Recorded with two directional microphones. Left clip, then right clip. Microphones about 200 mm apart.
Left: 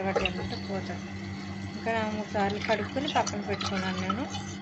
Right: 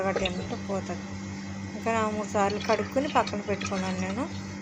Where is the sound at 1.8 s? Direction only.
15° right (ahead or behind).